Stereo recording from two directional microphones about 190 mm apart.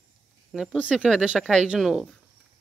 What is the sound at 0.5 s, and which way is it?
Speech, centre (ahead or behind).